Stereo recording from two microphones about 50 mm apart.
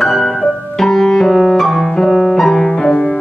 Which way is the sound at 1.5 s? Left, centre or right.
Centre.